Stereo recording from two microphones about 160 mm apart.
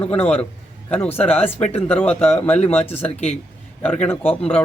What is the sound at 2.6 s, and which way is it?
Speech, 40° left (ahead or behind).